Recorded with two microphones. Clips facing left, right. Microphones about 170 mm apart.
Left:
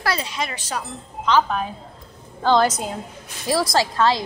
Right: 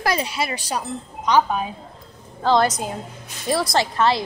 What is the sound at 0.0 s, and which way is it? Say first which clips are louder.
A woman's voice: right 2 dB; 15° right (ahead or behind).